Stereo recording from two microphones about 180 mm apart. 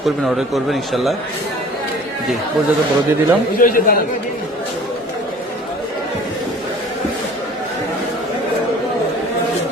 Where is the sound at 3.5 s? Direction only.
50° left (ahead or behind).